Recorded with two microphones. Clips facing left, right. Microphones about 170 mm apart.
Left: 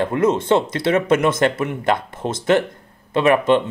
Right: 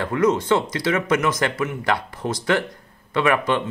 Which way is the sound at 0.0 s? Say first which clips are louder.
Left 2 dB; 25° left (ahead or behind).